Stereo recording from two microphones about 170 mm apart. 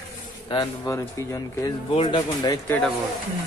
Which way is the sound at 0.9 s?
20° left (ahead or behind).